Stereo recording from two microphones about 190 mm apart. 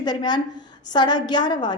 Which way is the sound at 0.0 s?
20° left (ahead or behind).